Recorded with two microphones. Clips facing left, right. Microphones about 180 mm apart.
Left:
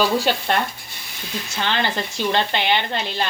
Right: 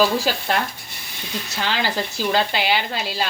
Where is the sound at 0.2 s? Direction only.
Centre (ahead or behind).